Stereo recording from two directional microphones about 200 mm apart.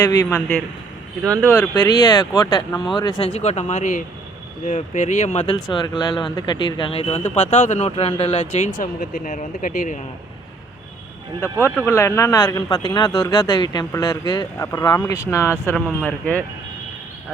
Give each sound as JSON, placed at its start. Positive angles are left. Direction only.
{"t": 0.0, "sound": "speech", "side_deg": 10}
{"t": 5.7, "sound": "speech", "side_deg": 20}
{"t": 8.8, "sound": "speech", "side_deg": 40}
{"t": 11.3, "sound": "speech", "side_deg": 10}